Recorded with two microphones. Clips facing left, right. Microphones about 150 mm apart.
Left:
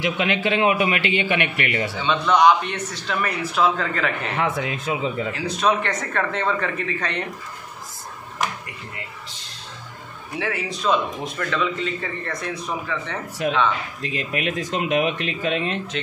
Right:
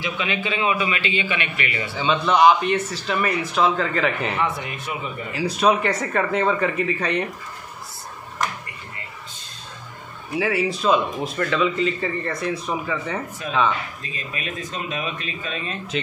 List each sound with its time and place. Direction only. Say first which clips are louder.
0.0 s a man's voice: left 4 dB; 75° left (ahead or behind)
2.0 s a man's voice: right 1 dB; 5° right (ahead or behind)
4.4 s speech: left 2 dB; 90° left
5.3 s speech: right 5 dB; 5° right (ahead or behind)
10.4 s a man's voice: right 3 dB; 5° right (ahead or behind)
13.4 s speech: left 2 dB; 70° left (ahead or behind)